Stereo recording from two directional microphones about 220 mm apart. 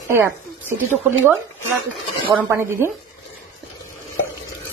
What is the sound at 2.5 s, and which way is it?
Speech, 10° right (ahead or behind).